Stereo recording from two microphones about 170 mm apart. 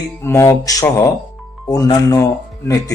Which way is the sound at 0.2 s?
15° left (ahead or behind).